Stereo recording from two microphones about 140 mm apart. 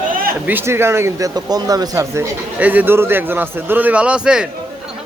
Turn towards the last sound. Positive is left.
turn(degrees=-5)  # may be behind; listen again after turning